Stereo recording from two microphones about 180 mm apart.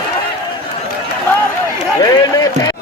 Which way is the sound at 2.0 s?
20° left (ahead or behind).